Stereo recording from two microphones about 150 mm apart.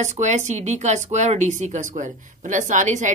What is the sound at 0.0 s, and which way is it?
Speech, 50° right (ahead or behind).